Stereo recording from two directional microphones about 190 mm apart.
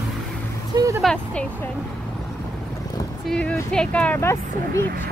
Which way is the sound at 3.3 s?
5° left (ahead or behind).